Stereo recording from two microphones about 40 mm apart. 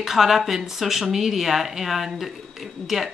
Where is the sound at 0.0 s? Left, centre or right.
Centre.